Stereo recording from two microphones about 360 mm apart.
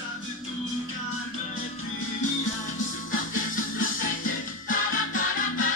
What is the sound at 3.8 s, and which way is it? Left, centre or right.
Music, left.